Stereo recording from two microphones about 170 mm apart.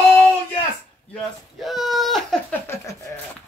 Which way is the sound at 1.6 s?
Centre (ahead or behind).